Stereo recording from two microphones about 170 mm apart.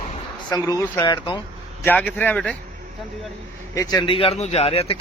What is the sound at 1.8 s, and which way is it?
Speech, 10° left (ahead or behind).